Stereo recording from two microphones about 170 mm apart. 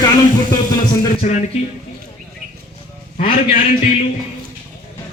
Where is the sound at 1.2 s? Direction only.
45° left (ahead or behind).